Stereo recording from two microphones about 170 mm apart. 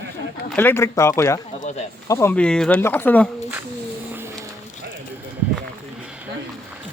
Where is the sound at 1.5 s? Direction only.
45° left (ahead or behind).